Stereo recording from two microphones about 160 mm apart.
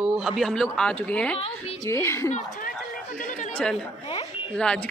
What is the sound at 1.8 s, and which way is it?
Speech, 15° left (ahead or behind).